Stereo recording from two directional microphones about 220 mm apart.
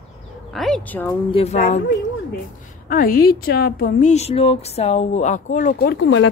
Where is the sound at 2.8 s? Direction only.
40° left (ahead or behind).